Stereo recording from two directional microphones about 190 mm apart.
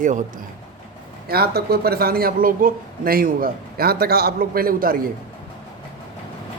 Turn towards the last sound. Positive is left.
turn(degrees=-50)  # may be behind; listen again after turning